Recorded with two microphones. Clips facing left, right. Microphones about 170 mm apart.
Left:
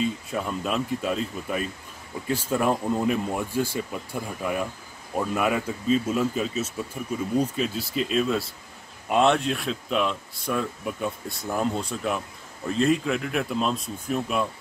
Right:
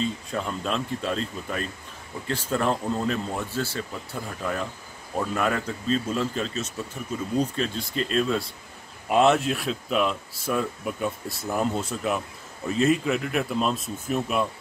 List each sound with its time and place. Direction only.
0.0 s speech: 10° left (ahead or behind)